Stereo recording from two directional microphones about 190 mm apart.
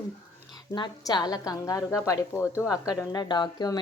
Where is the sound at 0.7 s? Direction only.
25° left (ahead or behind).